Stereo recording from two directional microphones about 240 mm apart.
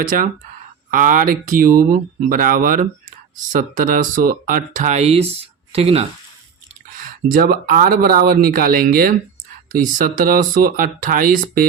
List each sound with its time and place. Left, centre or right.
0.0 s speech: right
6.9 s speech: right